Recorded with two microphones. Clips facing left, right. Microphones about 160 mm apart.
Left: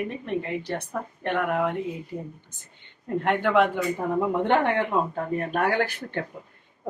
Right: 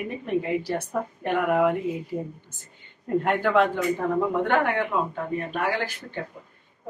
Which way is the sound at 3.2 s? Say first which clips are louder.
Left 1 dB; centre (ahead or behind).